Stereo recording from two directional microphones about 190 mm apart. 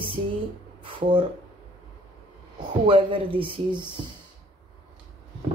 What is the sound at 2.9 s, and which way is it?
Speech, 25° right (ahead or behind).